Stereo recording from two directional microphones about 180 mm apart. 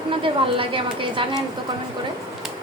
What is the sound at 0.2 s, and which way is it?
A woman's voice, 30° right (ahead or behind).